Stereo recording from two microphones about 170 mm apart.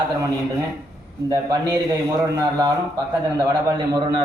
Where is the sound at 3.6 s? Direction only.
25° right (ahead or behind).